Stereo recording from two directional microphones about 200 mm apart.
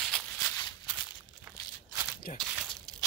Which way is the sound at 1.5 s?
10° right (ahead or behind).